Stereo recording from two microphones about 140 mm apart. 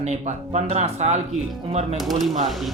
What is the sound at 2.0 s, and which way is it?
Speech, centre (ahead or behind).